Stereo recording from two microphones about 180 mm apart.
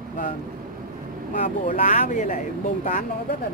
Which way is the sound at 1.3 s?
50° left (ahead or behind).